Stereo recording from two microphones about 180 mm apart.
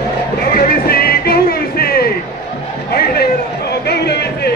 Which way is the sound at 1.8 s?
60° left (ahead or behind).